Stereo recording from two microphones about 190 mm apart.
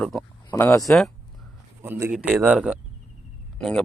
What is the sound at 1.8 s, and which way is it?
Speech, 10° right (ahead or behind).